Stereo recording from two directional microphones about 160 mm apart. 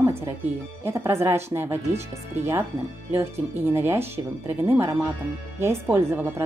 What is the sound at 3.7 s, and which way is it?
Speech, 15° right (ahead or behind).